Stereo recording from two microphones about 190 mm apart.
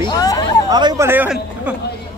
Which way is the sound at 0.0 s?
20° left (ahead or behind).